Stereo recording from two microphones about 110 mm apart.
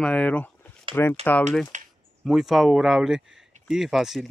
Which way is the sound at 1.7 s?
90° right.